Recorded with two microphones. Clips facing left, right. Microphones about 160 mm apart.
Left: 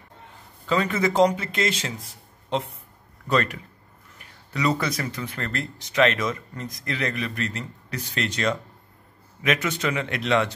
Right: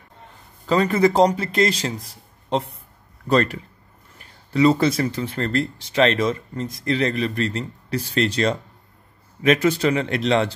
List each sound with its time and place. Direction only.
0.7 s speech: 35° right (ahead or behind)